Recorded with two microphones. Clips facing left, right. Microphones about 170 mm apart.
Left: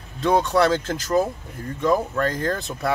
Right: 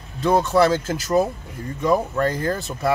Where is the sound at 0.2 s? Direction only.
5° right (ahead or behind).